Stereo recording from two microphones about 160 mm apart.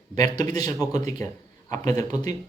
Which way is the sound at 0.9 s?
20° left (ahead or behind).